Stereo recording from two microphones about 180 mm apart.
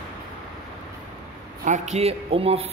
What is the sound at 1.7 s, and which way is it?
Speech, 35° right (ahead or behind).